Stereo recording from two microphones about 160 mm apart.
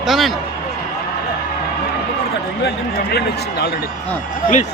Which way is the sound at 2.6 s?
85° left.